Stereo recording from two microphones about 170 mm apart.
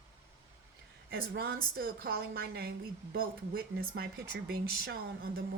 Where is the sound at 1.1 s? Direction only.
65° right (ahead or behind).